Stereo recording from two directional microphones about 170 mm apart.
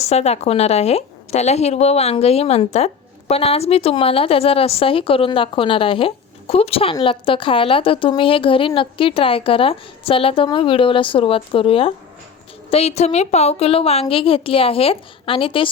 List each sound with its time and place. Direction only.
0.1 s a woman's voice: 40° left (ahead or behind)